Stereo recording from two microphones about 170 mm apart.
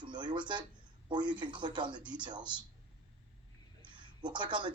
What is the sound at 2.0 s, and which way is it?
Speech, 5° right (ahead or behind).